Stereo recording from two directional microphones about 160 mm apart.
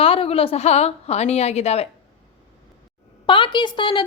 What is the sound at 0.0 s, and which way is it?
A woman's voice, 35° left (ahead or behind).